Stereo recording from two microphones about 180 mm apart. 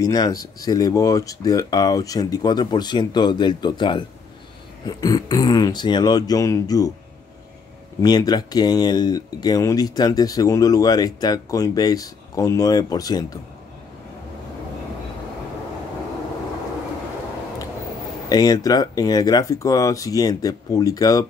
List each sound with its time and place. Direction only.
0.0 s speech: 20° left (ahead or behind)
8.0 s speech: 20° left (ahead or behind)
18.3 s speech: 20° left (ahead or behind)